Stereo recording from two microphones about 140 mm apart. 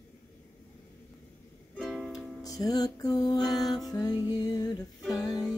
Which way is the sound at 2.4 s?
25° left (ahead or behind).